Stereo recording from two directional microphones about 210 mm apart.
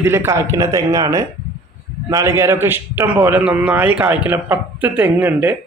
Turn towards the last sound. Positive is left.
turn(degrees=-10)  # may be behind; listen again after turning